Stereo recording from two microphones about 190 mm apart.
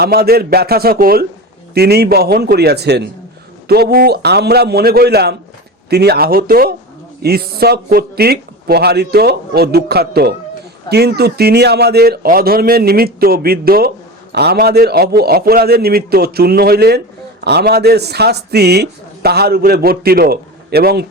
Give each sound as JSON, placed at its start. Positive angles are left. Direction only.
{"t": 0.0, "sound": "a man's voice", "side_deg": -55}